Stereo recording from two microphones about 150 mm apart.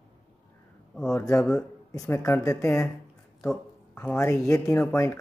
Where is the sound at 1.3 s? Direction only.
20° left (ahead or behind).